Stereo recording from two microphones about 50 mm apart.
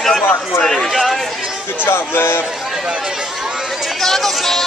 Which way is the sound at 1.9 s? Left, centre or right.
Left.